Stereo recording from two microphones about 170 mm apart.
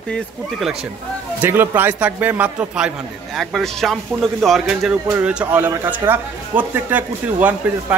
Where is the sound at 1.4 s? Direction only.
10° right (ahead or behind).